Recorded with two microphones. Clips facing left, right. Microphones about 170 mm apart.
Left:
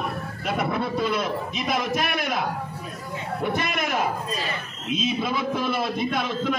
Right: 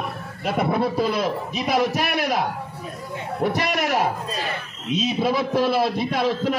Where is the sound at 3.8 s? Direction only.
35° right (ahead or behind).